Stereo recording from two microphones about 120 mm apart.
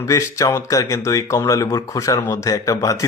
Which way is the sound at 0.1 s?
25° left (ahead or behind).